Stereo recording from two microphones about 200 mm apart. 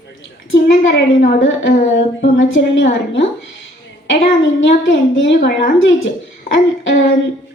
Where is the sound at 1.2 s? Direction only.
40° left (ahead or behind).